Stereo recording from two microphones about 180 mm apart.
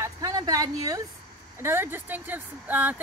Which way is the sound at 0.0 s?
20° right (ahead or behind).